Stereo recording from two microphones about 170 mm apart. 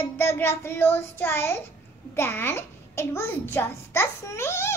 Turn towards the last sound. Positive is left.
turn(degrees=15)  # may be behind; listen again after turning